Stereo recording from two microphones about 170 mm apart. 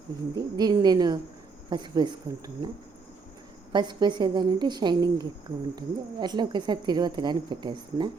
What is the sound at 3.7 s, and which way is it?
A woman's voice, 25° right (ahead or behind).